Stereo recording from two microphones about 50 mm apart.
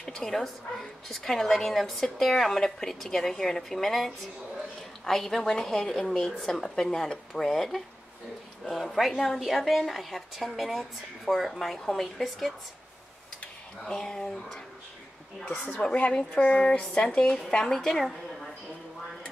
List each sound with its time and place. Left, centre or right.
0.0 s a woman's voice: centre
13.8 s speech: centre
15.5 s speech: left
16.1 s speech: centre
17.6 s a woman's voice: centre